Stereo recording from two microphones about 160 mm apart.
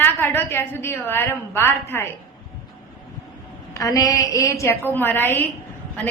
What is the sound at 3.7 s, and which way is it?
A woman's voice, 20° left (ahead or behind).